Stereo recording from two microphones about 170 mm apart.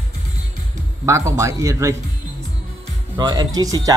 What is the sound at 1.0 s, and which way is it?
Speech, 15° right (ahead or behind).